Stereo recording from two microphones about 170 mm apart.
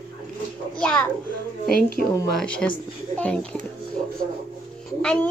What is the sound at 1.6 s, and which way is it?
Speech, 60° left (ahead or behind).